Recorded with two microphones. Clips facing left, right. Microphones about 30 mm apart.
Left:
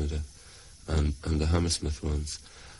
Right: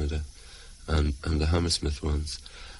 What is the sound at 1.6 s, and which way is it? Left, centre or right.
Speech, right.